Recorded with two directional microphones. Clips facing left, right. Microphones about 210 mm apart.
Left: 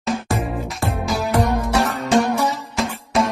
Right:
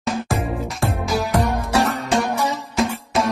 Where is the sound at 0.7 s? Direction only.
Centre (ahead or behind).